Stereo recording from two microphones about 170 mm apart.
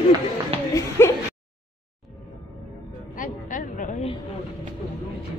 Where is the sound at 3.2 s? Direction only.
50° left (ahead or behind).